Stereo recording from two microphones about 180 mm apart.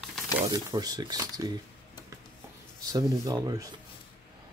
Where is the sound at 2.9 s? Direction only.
20° right (ahead or behind).